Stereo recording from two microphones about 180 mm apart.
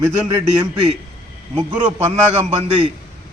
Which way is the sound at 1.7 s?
10° right (ahead or behind).